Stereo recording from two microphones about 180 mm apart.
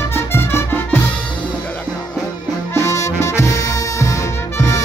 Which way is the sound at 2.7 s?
15° left (ahead or behind).